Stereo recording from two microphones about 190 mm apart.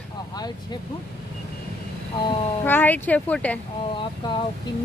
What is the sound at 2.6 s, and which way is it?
Speech, 10° left (ahead or behind).